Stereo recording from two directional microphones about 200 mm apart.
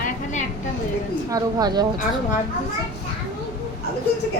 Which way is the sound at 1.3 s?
20° right (ahead or behind).